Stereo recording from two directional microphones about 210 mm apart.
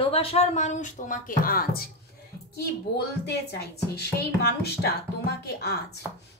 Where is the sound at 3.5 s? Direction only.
50° left (ahead or behind).